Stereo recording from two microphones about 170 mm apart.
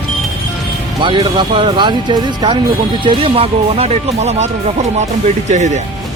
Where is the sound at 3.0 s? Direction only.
35° right (ahead or behind).